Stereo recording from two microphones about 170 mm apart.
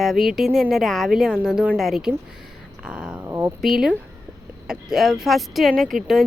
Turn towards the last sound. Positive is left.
turn(degrees=0)  # may be behind; listen again after turning